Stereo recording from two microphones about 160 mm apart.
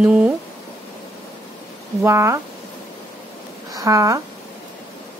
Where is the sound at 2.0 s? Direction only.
15° right (ahead or behind).